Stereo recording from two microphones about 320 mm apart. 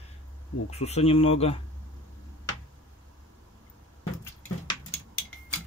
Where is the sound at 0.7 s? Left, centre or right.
Centre.